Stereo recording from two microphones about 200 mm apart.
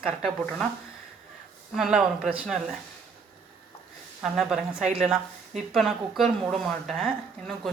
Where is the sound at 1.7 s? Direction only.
Centre (ahead or behind).